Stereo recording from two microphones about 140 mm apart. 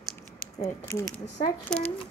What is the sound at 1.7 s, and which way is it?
Speech, 5° left (ahead or behind).